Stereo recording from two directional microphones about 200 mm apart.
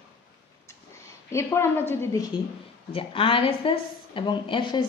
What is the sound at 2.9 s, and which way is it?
A woman's voice, 25° left (ahead or behind).